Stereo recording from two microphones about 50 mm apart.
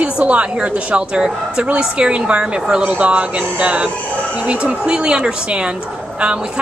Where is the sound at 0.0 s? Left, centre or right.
Right.